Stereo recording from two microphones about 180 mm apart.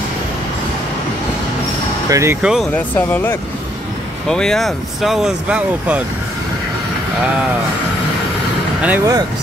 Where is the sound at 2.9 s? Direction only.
10° left (ahead or behind); by 6.0 s 5° right (ahead or behind).